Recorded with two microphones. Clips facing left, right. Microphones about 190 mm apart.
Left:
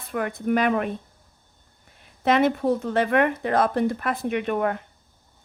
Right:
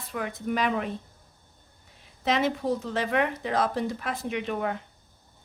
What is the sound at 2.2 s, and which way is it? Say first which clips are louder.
Speech: left 5 dB; 55° left (ahead or behind).